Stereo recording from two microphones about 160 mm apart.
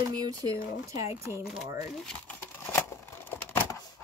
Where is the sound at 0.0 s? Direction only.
25° right (ahead or behind).